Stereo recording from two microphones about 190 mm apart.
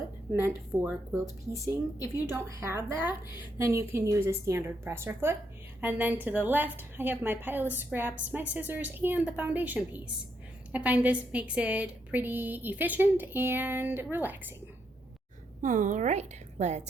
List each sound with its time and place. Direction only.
0.3 s a woman's voice: 10° right (ahead or behind)
15.6 s a woman's voice: 40° right (ahead or behind)